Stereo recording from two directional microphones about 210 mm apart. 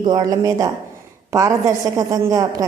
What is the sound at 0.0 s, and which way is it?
A woman's voice, 20° right (ahead or behind).